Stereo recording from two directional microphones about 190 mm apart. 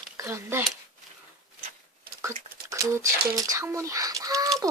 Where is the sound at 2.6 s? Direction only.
15° right (ahead or behind).